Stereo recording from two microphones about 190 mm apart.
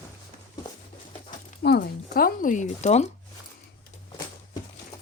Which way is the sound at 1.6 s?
55° left (ahead or behind).